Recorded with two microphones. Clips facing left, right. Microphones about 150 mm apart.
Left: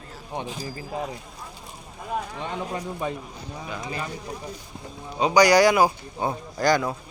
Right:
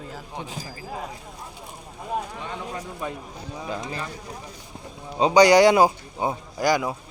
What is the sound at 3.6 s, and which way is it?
Speech, 30° right (ahead or behind).